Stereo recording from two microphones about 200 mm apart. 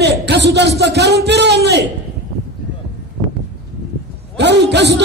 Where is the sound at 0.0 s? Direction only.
55° right (ahead or behind).